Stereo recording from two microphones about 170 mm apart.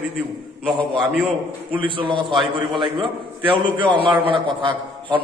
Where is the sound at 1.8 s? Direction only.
30° right (ahead or behind).